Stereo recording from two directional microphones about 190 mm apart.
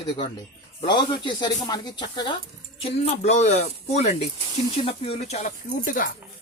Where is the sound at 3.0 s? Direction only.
35° left (ahead or behind).